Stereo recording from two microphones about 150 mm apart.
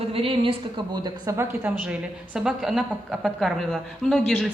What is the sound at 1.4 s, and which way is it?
A woman's voice, 10° right (ahead or behind).